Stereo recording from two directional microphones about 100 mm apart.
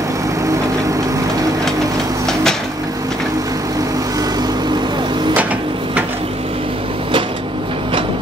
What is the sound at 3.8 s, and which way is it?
Vehicle, 40° right (ahead or behind).